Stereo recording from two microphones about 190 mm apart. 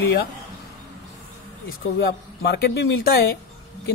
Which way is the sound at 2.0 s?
55° left (ahead or behind).